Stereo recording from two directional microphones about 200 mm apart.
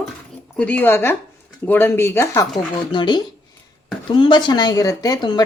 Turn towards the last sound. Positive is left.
turn(degrees=20)  # may be behind; listen again after turning